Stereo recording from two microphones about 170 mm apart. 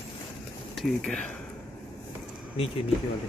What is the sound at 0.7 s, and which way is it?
Speech, 5° left (ahead or behind).